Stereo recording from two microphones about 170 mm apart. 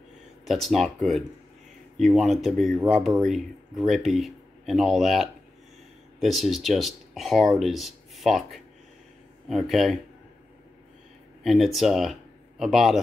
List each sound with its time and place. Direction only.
0.5 s speech: centre (ahead or behind)
11.4 s speech: centre (ahead or behind)